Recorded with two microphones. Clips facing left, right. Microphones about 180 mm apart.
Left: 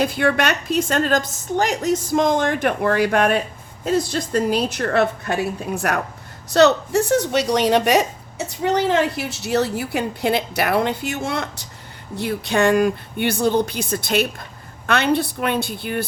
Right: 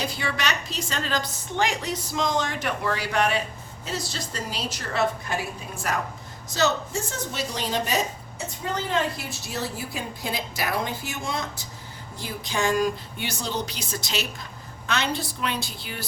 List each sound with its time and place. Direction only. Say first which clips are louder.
0.0 s a woman's voice: left 10 dB; 55° left (ahead or behind)